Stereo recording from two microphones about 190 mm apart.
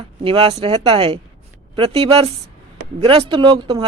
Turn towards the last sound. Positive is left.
turn(degrees=-25)  # may be behind; listen again after turning